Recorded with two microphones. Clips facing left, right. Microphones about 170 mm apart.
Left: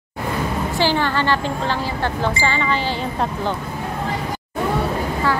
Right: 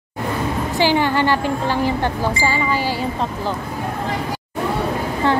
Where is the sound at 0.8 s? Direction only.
15° right (ahead or behind).